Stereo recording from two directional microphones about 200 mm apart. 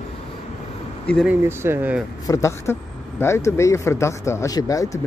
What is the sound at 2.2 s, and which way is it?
Speech, 15° left (ahead or behind).